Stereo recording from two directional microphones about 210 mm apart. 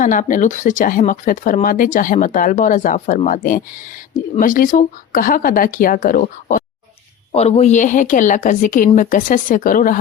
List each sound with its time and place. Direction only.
0.0 s speech: 40° left (ahead or behind)